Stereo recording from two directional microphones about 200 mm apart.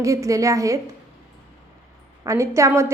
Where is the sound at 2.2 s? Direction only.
15° right (ahead or behind).